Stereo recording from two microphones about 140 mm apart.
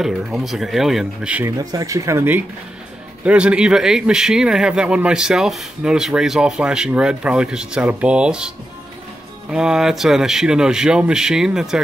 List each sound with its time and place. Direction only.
0.0 s speech: centre (ahead or behind)
1.4 s speech: 25° right (ahead or behind); by 11.8 s 5° right (ahead or behind)